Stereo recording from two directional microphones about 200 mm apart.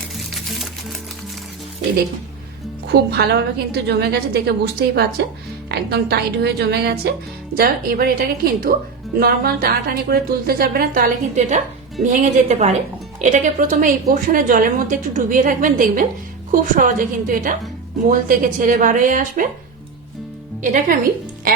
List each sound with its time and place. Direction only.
0.3 s music: centre (ahead or behind)
2.8 s a woman's voice: 55° right (ahead or behind)
20.6 s speech: 40° right (ahead or behind)